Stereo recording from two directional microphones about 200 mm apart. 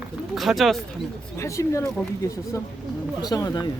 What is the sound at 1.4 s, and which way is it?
Speech, 15° left (ahead or behind).